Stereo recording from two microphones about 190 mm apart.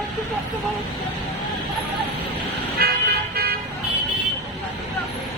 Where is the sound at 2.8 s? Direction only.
55° right (ahead or behind).